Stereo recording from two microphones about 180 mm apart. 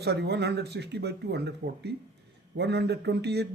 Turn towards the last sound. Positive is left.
turn(degrees=-70)  # may be behind; listen again after turning